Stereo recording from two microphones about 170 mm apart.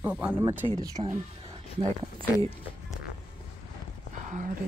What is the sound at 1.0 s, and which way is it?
Speech, 35° right (ahead or behind).